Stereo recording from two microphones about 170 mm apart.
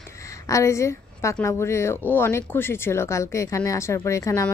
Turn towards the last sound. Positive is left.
turn(degrees=20)  # may be behind; listen again after turning